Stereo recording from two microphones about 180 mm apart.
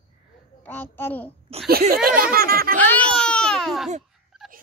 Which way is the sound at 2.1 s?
55° right (ahead or behind).